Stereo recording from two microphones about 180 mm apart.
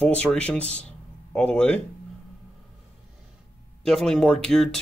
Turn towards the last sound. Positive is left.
turn(degrees=5)  # may be behind; listen again after turning